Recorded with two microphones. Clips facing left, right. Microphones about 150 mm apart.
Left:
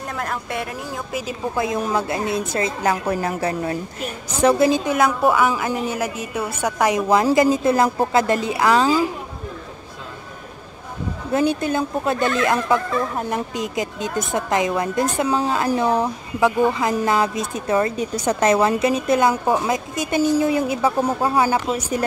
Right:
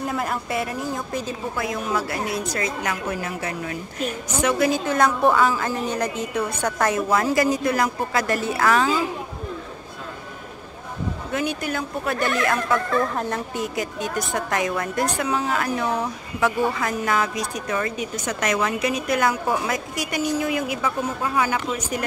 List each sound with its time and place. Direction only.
0.0 s a woman's voice: 5° right (ahead or behind)
1.6 s a woman's voice: 25° left (ahead or behind)
4.9 s a woman's voice: 5° left (ahead or behind)
7.1 s a woman's voice: 20° left (ahead or behind)
11.3 s a woman's voice: 25° left (ahead or behind)